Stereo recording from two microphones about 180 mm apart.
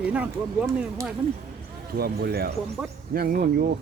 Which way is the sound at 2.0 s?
60° right (ahead or behind).